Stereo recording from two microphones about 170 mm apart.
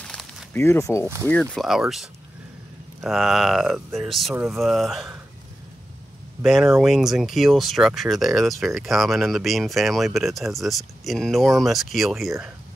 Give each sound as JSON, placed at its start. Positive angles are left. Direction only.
{"t": 0.0, "sound": "a sound", "side_deg": 0}
{"t": 0.6, "sound": "speech", "side_deg": 15}
{"t": 1.0, "sound": "speech", "side_deg": -15}
{"t": 1.3, "sound": "speech", "side_deg": 5}
{"t": 6.4, "sound": "speech", "side_deg": -5}